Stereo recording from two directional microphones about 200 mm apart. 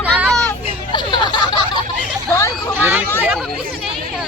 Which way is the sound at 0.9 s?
20° left (ahead or behind).